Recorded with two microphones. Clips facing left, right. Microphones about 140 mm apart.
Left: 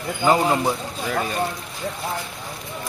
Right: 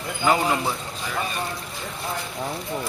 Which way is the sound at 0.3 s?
35° left (ahead or behind).